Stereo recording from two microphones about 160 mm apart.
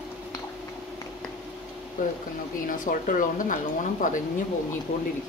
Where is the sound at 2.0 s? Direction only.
60° left (ahead or behind).